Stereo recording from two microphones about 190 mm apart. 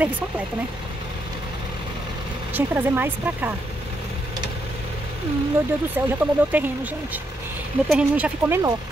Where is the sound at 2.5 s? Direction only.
10° right (ahead or behind).